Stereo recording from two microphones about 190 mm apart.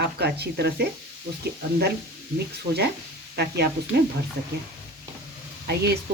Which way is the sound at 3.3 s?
60° right (ahead or behind).